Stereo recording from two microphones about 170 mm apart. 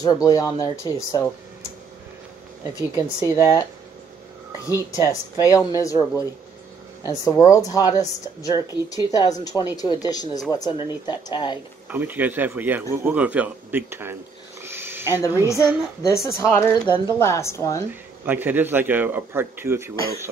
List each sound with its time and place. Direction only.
0.0 s a woman's voice: 20° left (ahead or behind)
4.6 s a woman's voice: 20° left (ahead or behind)
11.9 s a man's voice: 10° right (ahead or behind)
14.6 s a sound: 15° right (ahead or behind)
15.4 s a woman's voice: 15° left (ahead or behind)
16.8 s a woman's voice: 25° left (ahead or behind)
17.2 s a woman's voice: 15° left (ahead or behind)
18.2 s a man's voice: 10° right (ahead or behind)